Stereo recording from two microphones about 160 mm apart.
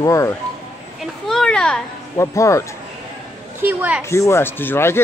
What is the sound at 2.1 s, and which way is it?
Speech, 20° left (ahead or behind).